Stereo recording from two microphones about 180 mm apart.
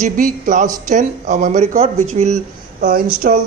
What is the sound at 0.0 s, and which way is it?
Speech, 45° right (ahead or behind).